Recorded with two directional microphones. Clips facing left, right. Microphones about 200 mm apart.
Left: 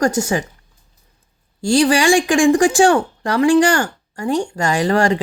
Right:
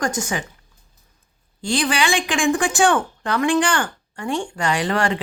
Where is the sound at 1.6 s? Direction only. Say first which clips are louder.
Left 7 dB; 40° left (ahead or behind).